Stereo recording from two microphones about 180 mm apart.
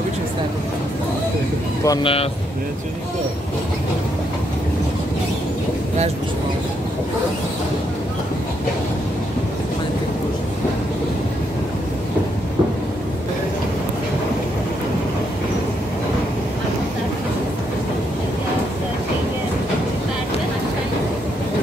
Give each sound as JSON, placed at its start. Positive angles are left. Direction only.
{"t": 1.9, "sound": "speech", "side_deg": 30}